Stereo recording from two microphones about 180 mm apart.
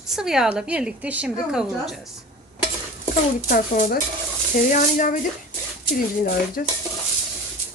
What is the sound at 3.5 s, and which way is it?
Speech, 55° left (ahead or behind).